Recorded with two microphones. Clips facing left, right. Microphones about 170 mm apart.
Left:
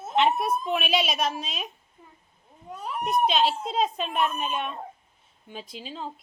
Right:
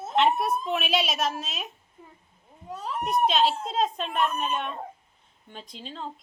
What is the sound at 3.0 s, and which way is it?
Speech, centre (ahead or behind).